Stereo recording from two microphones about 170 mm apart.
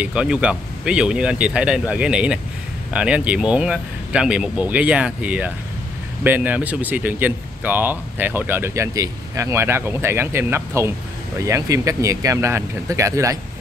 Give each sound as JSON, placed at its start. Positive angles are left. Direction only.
{"t": 0.0, "sound": "speech", "side_deg": -5}